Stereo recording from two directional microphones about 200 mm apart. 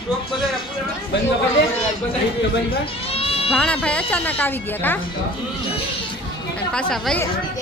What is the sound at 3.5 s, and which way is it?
Speech, 5° left (ahead or behind).